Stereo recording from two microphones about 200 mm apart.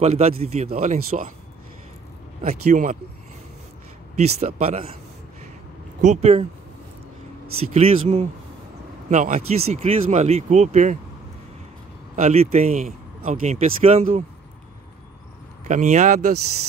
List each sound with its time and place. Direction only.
0.0 s speech: 30° right (ahead or behind)
2.4 s speech: 40° right (ahead or behind)
4.4 s speech: 30° right (ahead or behind)
5.9 s speech: 35° right (ahead or behind)
7.7 s speech: 35° right (ahead or behind)
12.2 s speech: 35° right (ahead or behind)
15.6 s speech: 35° right (ahead or behind)